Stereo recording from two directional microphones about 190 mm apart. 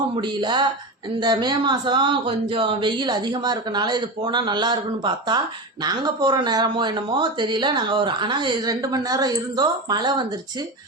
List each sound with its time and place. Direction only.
0.2 s speech: 25° right (ahead or behind)